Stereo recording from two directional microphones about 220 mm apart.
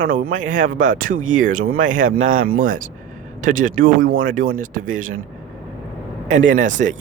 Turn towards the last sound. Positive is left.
turn(degrees=-35)  # may be behind; listen again after turning